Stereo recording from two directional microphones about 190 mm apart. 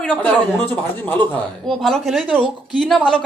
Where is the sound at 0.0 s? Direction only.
5° left (ahead or behind).